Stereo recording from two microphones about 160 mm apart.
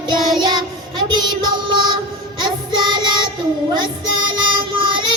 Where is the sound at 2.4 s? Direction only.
30° right (ahead or behind).